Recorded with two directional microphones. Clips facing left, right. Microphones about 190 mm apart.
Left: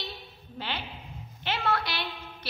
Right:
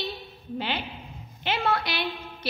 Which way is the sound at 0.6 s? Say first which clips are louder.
Right 5 dB; 15° right (ahead or behind).